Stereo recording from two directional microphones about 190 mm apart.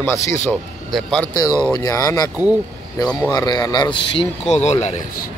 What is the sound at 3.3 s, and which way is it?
Speech, 20° left (ahead or behind).